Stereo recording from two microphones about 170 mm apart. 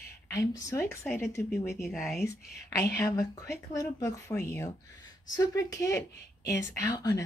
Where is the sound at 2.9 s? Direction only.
20° left (ahead or behind).